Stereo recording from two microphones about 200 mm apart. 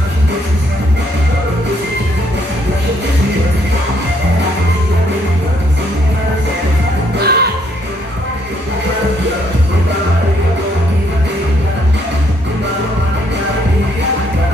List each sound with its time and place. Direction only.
7.2 s music: 50° right (ahead or behind)